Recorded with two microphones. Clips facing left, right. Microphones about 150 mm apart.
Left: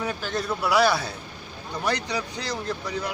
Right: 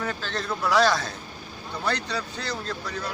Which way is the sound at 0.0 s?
15° left (ahead or behind).